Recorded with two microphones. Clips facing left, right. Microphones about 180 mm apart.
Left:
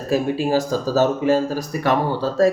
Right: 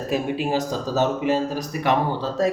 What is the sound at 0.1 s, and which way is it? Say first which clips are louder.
Speech: left 5 dB; 20° right (ahead or behind).